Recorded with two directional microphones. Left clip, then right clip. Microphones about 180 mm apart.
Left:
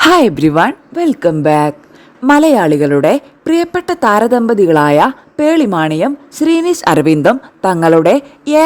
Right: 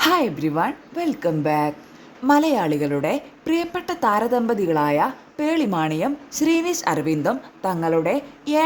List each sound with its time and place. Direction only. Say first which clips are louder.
0.0 s a woman's voice: left 11 dB; 45° left (ahead or behind)